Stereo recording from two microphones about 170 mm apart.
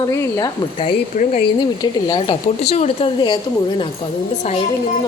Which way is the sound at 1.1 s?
45° left (ahead or behind).